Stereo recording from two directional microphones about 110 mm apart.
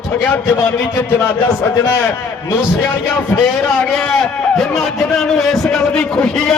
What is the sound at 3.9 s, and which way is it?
A man's voice, 5° left (ahead or behind).